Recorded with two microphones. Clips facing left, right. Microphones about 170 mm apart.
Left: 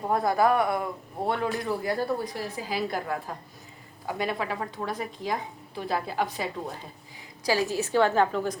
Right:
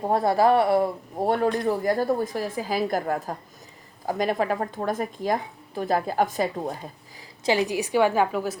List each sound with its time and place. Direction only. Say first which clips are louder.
0.1 s speech: right 3 dB; 30° right (ahead or behind); by 6.5 s 45° right (ahead or behind)
7.4 s a woman's voice: right 3 dB; 20° right (ahead or behind)